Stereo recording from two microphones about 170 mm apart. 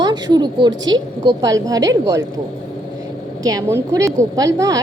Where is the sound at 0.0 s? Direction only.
25° right (ahead or behind).